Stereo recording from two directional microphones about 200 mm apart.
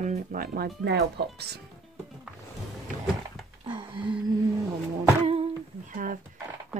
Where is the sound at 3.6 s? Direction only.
25° right (ahead or behind).